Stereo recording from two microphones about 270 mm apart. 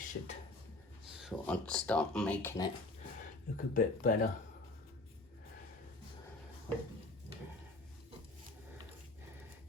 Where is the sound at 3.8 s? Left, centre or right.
Left.